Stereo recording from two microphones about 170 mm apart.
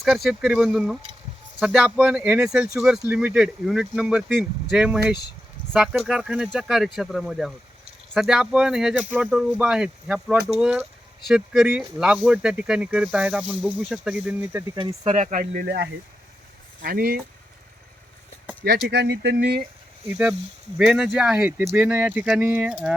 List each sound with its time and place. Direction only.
0.0 s speech: centre (ahead or behind)
14.8 s speech: 30° right (ahead or behind)
15.1 s speech: 50° right (ahead or behind)
18.9 s speech: 85° right
20.1 s speech: 10° right (ahead or behind)